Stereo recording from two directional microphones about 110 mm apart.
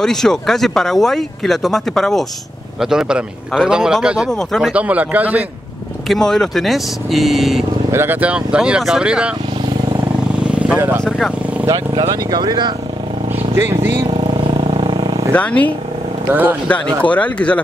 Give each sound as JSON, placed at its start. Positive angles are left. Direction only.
{"t": 0.0, "sound": "speech", "side_deg": 5}
{"t": 4.3, "sound": "speech", "side_deg": 5}
{"t": 4.7, "sound": "speech", "side_deg": -15}
{"t": 6.0, "sound": "speech", "side_deg": 5}
{"t": 7.9, "sound": "speech", "side_deg": -20}
{"t": 10.4, "sound": "vehicle", "side_deg": -10}
{"t": 11.1, "sound": "speech", "side_deg": 0}
{"t": 12.1, "sound": "speech", "side_deg": -40}
{"t": 14.6, "sound": "vehicle", "side_deg": -55}
{"t": 15.3, "sound": "speech", "side_deg": 10}
{"t": 16.3, "sound": "speech", "side_deg": -15}
{"t": 16.6, "sound": "speech", "side_deg": 10}